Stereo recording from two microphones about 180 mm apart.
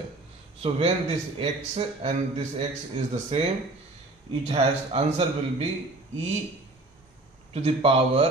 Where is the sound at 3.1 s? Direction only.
35° right (ahead or behind).